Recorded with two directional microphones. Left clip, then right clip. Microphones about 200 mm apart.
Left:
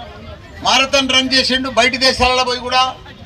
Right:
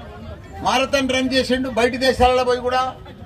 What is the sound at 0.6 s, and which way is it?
A man's voice, 55° right (ahead or behind).